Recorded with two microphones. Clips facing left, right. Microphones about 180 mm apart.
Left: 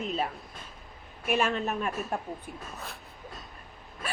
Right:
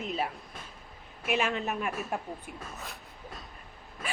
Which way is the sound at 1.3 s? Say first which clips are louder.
Left 2 dB; 50° left (ahead or behind).